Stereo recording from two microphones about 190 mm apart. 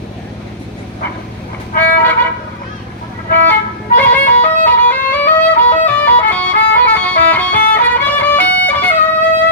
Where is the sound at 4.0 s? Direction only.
10° left (ahead or behind).